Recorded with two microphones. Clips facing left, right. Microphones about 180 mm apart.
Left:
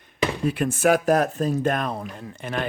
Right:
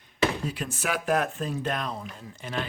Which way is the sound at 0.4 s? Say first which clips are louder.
Left 11 dB; 55° left (ahead or behind).